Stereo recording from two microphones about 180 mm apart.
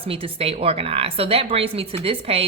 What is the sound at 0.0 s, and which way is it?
A woman's voice, 30° right (ahead or behind).